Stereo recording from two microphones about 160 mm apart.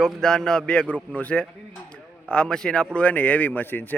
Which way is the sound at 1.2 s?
10° left (ahead or behind).